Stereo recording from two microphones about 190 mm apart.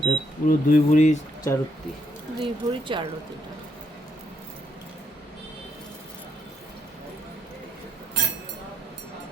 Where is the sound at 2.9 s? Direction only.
25° right (ahead or behind).